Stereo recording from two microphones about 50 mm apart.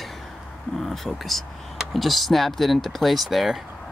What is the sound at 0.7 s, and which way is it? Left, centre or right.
Speech, centre.